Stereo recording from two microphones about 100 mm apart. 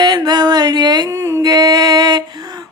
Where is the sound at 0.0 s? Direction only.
45° right (ahead or behind).